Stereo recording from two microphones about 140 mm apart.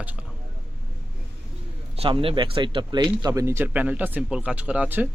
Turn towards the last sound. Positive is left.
turn(degrees=-10)  # may be behind; listen again after turning